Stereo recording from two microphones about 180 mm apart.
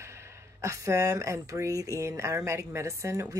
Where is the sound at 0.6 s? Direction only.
15° right (ahead or behind).